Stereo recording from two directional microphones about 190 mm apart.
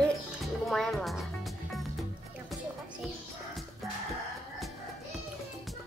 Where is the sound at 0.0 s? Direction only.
Centre (ahead or behind).